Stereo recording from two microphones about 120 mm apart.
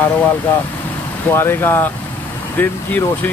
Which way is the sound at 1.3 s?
20° left (ahead or behind).